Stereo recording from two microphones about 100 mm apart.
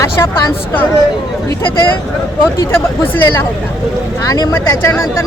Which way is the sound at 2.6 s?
25° left (ahead or behind).